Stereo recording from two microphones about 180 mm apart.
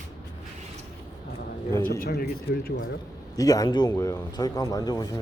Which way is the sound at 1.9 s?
55° left (ahead or behind).